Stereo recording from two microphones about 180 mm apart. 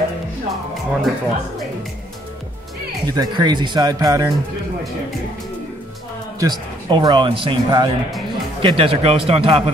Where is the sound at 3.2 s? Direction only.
25° right (ahead or behind).